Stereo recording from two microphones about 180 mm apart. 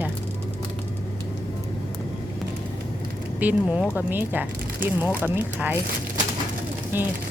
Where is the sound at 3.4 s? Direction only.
10° right (ahead or behind).